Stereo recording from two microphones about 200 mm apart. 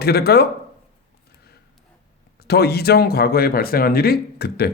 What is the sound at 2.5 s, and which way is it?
Speech, 50° left (ahead or behind).